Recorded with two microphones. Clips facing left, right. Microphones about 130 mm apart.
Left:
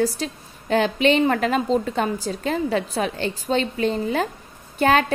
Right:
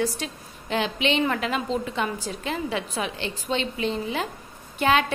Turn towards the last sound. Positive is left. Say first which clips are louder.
# left 3 dB
turn(degrees=45)  # may be behind; listen again after turning